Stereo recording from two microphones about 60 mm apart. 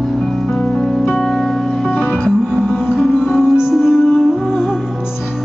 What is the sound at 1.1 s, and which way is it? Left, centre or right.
Music, centre.